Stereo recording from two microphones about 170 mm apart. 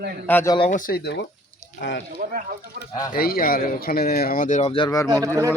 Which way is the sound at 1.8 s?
90° left.